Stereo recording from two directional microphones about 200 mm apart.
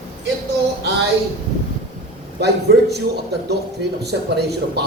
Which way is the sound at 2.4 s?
55° right (ahead or behind).